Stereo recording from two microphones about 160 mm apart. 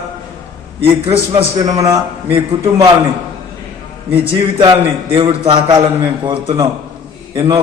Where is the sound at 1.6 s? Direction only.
20° right (ahead or behind).